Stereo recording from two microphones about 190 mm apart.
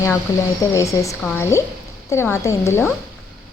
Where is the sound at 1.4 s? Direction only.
15° left (ahead or behind).